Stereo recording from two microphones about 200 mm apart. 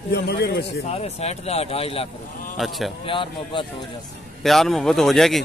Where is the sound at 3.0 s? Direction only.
25° left (ahead or behind).